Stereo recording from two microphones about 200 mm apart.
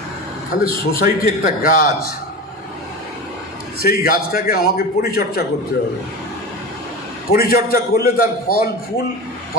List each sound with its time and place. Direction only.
0.5 s a man's voice: 50° left (ahead or behind)
3.8 s a man's voice: 50° left (ahead or behind)
7.3 s a man's voice: 50° left (ahead or behind)